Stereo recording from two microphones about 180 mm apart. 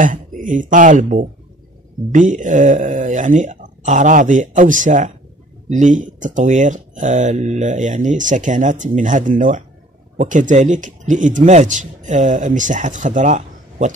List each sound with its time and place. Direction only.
0.0 s speech: 45° right (ahead or behind)